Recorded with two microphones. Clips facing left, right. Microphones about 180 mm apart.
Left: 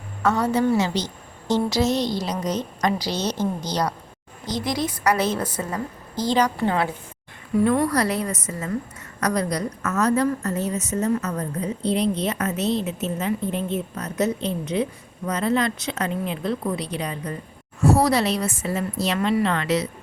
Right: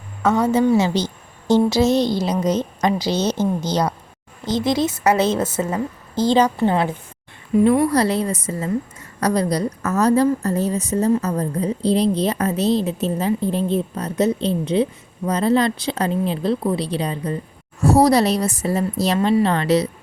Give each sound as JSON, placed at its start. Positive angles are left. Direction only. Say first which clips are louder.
{"t": 0.2, "sound": "a woman's voice", "louder": "right 4 dB", "side_deg": -20}
{"t": 7.9, "sound": "a woman's voice", "louder": "right 4 dB", "side_deg": -30}